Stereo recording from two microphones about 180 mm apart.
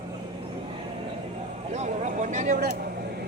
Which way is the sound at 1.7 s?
40° right (ahead or behind).